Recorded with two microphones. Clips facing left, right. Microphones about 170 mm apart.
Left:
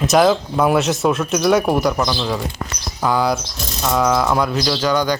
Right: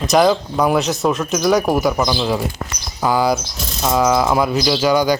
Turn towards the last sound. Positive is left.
turn(degrees=-10)  # may be behind; listen again after turning